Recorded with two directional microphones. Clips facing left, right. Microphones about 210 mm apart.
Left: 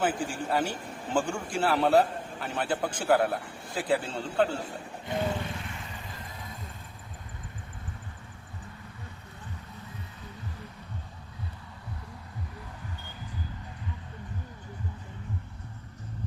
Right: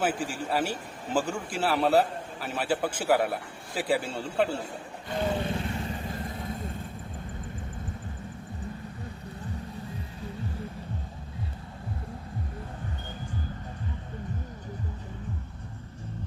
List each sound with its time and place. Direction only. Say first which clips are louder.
0.0 s a man's voice: even; 5° right (ahead or behind)
5.4 s vehicle: right 7 dB; 35° right (ahead or behind); by 6.6 s 50° right (ahead or behind)